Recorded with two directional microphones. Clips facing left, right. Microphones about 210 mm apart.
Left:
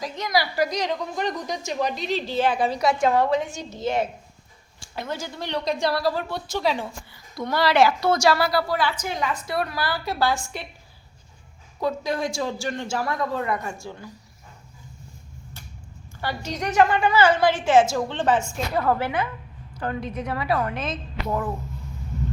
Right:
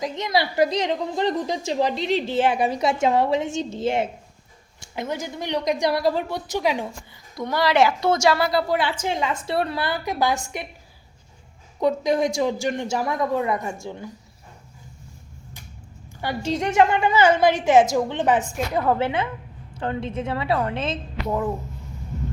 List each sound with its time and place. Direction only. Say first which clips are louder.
0.0 s a woman's voice: right 2 dB; 25° right (ahead or behind)
11.8 s a woman's voice: right 5 dB; 20° right (ahead or behind)
16.2 s a woman's voice: right 4 dB; 25° right (ahead or behind)
21.2 s speech: right 2 dB; 10° right (ahead or behind)